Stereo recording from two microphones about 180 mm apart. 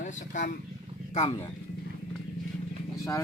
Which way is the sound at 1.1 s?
30° left (ahead or behind).